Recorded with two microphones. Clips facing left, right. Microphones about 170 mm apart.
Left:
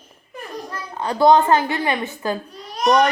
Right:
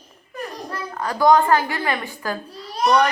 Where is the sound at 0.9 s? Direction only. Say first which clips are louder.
Left 2 dB; 25° left (ahead or behind).